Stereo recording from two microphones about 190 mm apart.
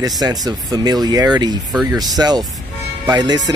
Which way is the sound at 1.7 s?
Centre (ahead or behind).